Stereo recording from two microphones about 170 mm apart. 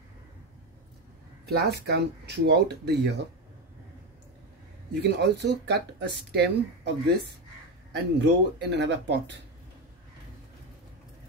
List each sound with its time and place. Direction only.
1.4 s speech: 70° right (ahead or behind)
4.9 s speech: 80° right
7.9 s speech: 90° right